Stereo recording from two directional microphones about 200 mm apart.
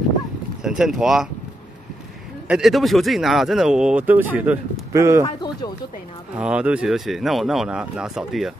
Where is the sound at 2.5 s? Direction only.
Centre (ahead or behind).